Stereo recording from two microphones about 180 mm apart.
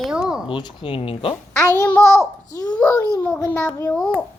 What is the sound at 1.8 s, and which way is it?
Babbling, 10° left (ahead or behind).